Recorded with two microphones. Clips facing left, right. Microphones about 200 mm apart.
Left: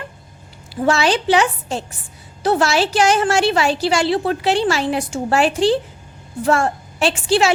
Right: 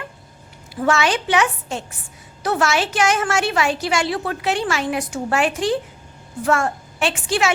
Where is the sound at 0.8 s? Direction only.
35° left (ahead or behind).